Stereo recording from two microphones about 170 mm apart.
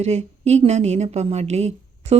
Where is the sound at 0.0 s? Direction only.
40° right (ahead or behind).